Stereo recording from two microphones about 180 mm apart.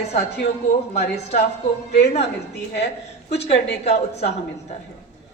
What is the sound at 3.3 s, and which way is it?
Speech, 70° left (ahead or behind).